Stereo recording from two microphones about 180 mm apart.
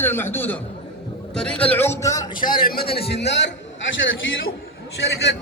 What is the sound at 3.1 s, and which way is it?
Speech, 70° left (ahead or behind).